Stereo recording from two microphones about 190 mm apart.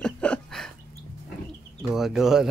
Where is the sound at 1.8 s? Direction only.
Centre (ahead or behind).